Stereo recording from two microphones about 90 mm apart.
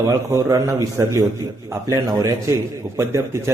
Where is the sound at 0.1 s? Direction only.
35° right (ahead or behind).